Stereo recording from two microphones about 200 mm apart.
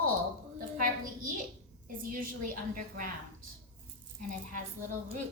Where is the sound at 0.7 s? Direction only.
45° right (ahead or behind).